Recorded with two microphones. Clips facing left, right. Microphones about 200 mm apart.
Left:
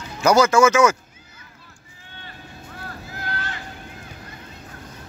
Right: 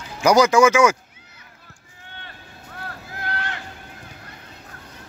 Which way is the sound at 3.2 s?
60° right (ahead or behind).